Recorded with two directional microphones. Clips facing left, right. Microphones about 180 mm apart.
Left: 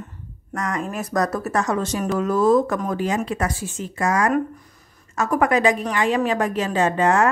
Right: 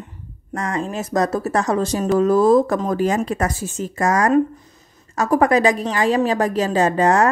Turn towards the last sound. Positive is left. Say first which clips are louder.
# right 2 dB
turn(degrees=-40)  # may be behind; listen again after turning